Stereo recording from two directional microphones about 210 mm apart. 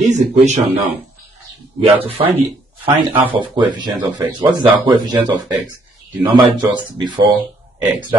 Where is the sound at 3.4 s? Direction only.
20° right (ahead or behind).